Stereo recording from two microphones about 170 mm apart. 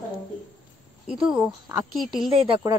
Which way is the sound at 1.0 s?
5° right (ahead or behind).